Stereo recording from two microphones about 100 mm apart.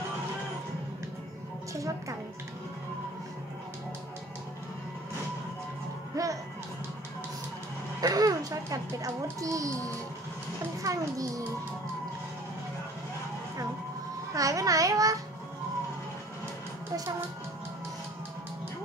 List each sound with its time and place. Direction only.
1.7 s a child's voice: 35° right (ahead or behind)
6.2 s music: 35° right (ahead or behind)
8.0 s music: 40° right (ahead or behind)
10.8 s a child's voice: 35° right (ahead or behind)
14.3 s a child's voice: 35° right (ahead or behind)